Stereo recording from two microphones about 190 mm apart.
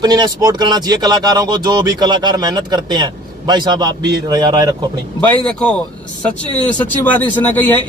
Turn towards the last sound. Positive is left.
turn(degrees=10)  # may be behind; listen again after turning